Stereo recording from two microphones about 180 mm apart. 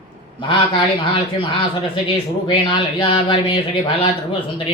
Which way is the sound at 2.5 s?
25° left (ahead or behind).